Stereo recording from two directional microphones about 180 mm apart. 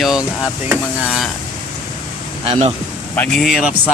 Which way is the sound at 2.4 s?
35° right (ahead or behind).